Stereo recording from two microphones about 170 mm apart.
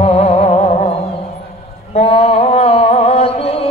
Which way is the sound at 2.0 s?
35° left (ahead or behind).